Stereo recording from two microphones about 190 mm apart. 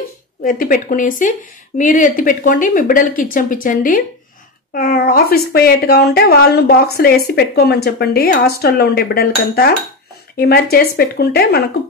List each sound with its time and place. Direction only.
0.4 s a woman's voice: 45° left (ahead or behind)